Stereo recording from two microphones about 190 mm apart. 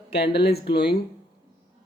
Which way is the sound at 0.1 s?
60° left (ahead or behind).